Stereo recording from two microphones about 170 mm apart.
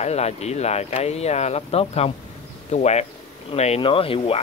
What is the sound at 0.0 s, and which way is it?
Speech, 40° left (ahead or behind).